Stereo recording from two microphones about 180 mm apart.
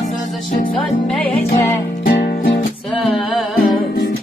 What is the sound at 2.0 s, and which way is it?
Music, 60° left (ahead or behind).